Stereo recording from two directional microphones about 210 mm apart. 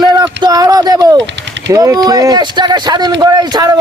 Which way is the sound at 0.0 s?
20° right (ahead or behind).